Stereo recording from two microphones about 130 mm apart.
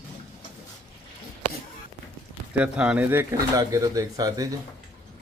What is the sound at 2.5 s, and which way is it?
Speech, 10° right (ahead or behind).